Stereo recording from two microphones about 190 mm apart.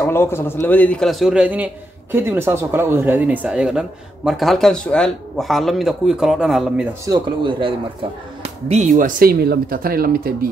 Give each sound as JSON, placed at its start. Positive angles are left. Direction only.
{"t": 0.0, "sound": "a man's voice", "side_deg": 10}
{"t": 7.1, "sound": "speech", "side_deg": -25}